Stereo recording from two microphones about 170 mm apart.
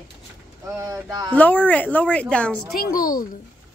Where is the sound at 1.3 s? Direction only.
10° left (ahead or behind).